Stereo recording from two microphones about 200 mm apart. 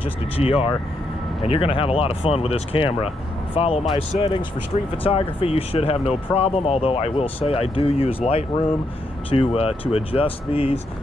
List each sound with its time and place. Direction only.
0.0 s speech: 30° left (ahead or behind)